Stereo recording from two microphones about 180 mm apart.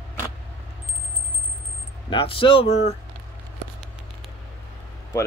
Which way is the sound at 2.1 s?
30° left (ahead or behind).